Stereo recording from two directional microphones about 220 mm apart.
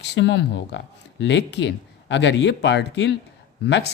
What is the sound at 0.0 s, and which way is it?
Speech, 55° left (ahead or behind).